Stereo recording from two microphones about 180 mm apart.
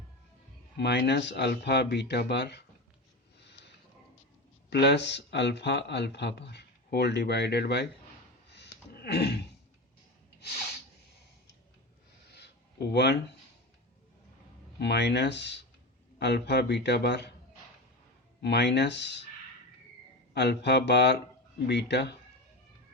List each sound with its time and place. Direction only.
0.8 s speech: 65° left (ahead or behind)
4.7 s speech: 70° left (ahead or behind)
8.4 s a sound: 70° left (ahead or behind)
12.9 s speech: 65° left (ahead or behind)
14.8 s speech: 65° left (ahead or behind)
18.4 s speech: 65° left (ahead or behind)
20.3 s speech: 70° left (ahead or behind)